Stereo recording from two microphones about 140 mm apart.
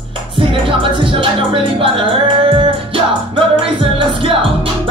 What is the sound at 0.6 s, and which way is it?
Music, 35° right (ahead or behind).